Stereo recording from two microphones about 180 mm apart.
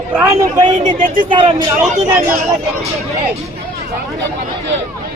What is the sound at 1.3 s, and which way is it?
Speech, 25° right (ahead or behind).